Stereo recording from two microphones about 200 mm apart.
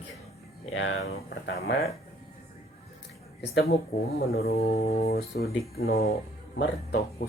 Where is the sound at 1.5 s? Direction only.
50° left (ahead or behind).